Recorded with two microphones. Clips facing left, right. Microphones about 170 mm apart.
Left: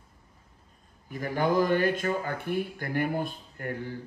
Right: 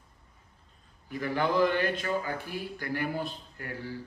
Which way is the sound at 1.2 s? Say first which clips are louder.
Left 1 dB; 45° left (ahead or behind).